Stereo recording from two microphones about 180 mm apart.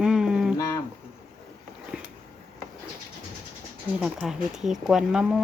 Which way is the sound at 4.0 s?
5° right (ahead or behind).